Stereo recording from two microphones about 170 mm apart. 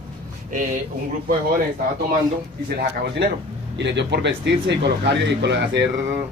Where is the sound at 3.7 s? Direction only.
90° right.